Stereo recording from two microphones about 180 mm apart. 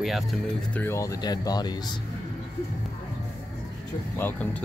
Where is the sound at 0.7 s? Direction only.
10° left (ahead or behind).